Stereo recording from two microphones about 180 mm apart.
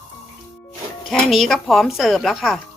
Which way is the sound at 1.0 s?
Centre (ahead or behind).